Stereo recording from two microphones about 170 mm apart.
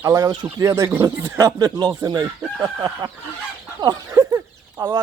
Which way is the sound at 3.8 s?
25° right (ahead or behind).